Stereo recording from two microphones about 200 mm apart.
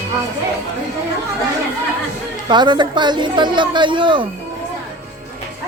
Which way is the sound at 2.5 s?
20° right (ahead or behind).